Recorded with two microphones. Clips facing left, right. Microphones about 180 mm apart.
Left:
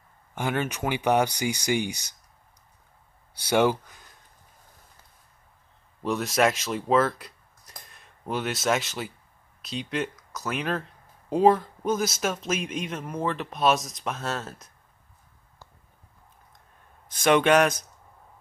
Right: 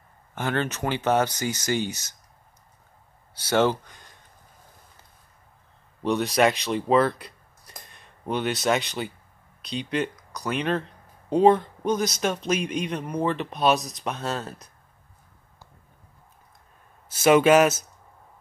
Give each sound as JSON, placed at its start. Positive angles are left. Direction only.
{"t": 0.3, "sound": "speech", "side_deg": 10}
{"t": 3.3, "sound": "speech", "side_deg": 10}
{"t": 6.0, "sound": "a man's voice", "side_deg": 0}
{"t": 17.1, "sound": "a man's voice", "side_deg": -5}